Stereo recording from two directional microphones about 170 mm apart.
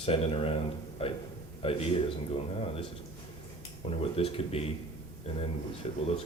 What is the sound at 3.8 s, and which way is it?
Speech, 35° left (ahead or behind).